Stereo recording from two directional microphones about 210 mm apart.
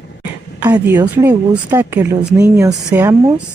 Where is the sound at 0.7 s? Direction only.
10° right (ahead or behind).